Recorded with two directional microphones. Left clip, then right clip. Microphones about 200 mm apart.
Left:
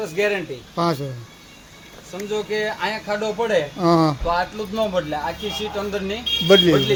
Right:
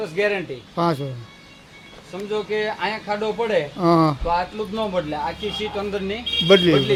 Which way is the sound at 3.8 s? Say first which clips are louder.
Right 1 dB; centre (ahead or behind).